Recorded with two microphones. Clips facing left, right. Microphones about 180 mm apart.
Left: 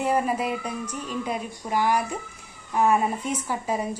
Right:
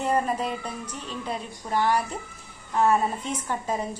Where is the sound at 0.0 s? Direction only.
10° left (ahead or behind).